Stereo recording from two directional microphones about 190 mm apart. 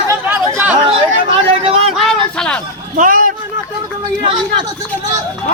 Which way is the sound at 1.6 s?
30° right (ahead or behind).